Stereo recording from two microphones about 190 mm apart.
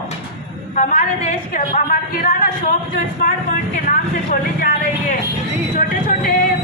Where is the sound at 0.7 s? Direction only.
40° left (ahead or behind).